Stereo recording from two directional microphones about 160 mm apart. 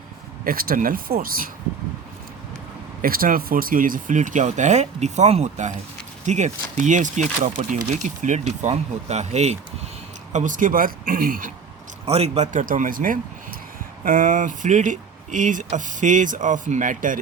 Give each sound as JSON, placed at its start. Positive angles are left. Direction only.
{"t": 0.4, "sound": "speech", "side_deg": -65}
{"t": 3.0, "sound": "speech", "side_deg": -65}
{"t": 12.0, "sound": "speech", "side_deg": -40}